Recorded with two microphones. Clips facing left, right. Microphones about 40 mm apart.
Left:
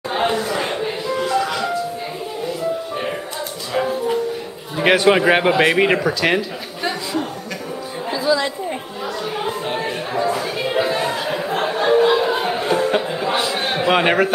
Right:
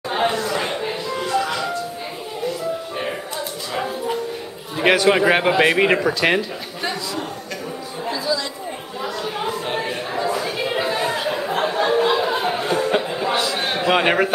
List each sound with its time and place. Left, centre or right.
0.1 s music: centre
3.7 s music: centre
4.9 s speech: centre
8.1 s chatter: left
9.0 s chatter: centre
9.7 s a sound: centre